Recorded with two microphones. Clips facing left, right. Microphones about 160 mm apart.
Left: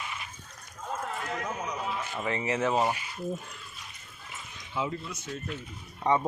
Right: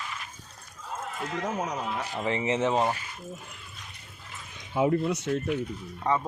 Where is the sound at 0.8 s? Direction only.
65° left (ahead or behind).